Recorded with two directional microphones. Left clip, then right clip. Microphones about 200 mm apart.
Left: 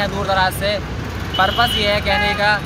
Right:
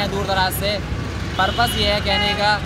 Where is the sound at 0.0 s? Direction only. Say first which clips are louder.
Left 3 dB; 5° left (ahead or behind).